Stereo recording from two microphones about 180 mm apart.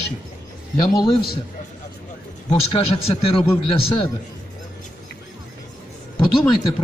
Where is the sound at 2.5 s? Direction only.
30° left (ahead or behind).